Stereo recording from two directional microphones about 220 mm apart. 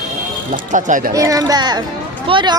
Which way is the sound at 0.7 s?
35° right (ahead or behind).